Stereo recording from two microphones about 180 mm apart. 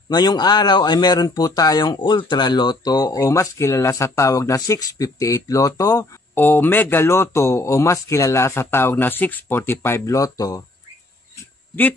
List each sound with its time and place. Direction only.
0.1 s speech: 25° left (ahead or behind)